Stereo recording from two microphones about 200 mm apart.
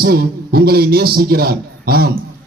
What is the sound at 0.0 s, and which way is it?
A man's voice, 50° right (ahead or behind).